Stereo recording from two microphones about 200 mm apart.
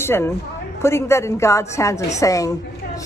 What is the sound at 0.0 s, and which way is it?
A woman's voice, 10° left (ahead or behind).